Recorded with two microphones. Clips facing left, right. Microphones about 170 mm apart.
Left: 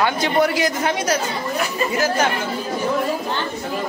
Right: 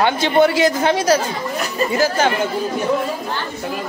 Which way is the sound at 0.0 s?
25° right (ahead or behind).